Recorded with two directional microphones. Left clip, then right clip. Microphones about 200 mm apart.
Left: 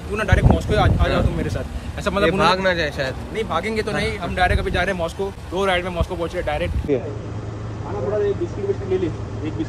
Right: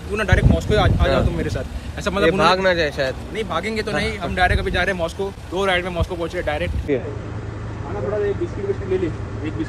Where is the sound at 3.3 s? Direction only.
30° left (ahead or behind); by 7.0 s 15° left (ahead or behind).